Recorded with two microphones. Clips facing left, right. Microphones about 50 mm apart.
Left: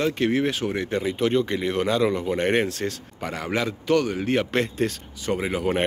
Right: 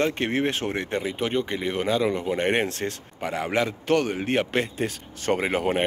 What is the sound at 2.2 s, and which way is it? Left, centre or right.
A man's voice, right.